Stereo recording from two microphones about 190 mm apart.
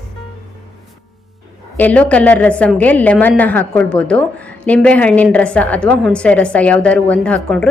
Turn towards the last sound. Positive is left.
turn(degrees=5)  # may be behind; listen again after turning